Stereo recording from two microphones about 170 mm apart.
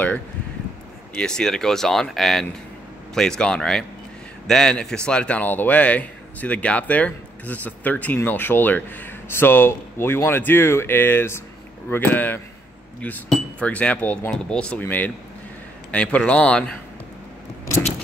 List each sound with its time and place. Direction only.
1.1 s a man's voice: 5° left (ahead or behind)